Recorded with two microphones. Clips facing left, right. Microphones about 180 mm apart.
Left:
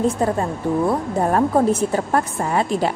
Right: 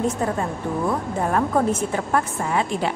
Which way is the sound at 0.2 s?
35° left (ahead or behind).